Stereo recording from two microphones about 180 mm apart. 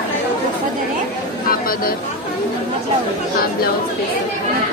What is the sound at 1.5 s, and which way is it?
Speech, 55° left (ahead or behind).